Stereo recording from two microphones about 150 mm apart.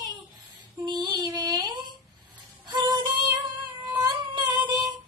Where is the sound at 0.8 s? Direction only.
30° right (ahead or behind).